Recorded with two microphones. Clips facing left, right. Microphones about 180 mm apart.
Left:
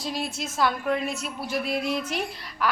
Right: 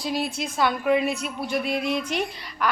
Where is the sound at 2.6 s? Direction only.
5° left (ahead or behind).